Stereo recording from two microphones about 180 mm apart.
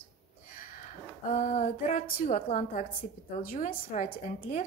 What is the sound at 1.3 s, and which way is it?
A woman's voice, 40° left (ahead or behind).